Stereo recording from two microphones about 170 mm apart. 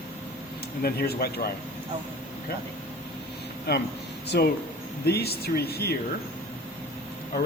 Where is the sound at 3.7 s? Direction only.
70° left (ahead or behind).